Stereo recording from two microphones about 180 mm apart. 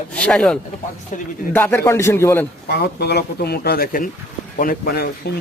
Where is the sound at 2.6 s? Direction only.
65° left (ahead or behind).